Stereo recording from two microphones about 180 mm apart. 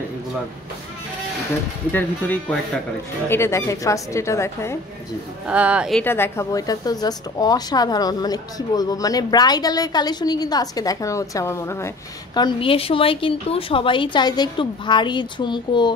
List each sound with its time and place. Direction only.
1.9 s a woman's voice: 10° left (ahead or behind)
5.5 s speech: 5° right (ahead or behind)
6.0 s a woman's voice: 15° left (ahead or behind)
12.4 s a woman's voice: 25° left (ahead or behind)